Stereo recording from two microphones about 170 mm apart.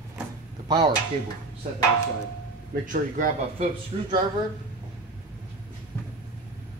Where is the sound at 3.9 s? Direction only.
35° right (ahead or behind).